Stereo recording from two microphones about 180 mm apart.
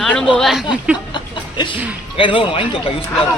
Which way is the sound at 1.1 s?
25° left (ahead or behind).